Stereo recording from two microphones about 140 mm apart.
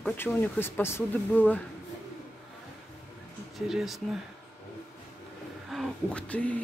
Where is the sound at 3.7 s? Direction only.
Centre (ahead or behind).